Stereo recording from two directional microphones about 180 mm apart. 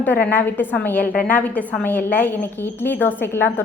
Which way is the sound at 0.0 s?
10° left (ahead or behind).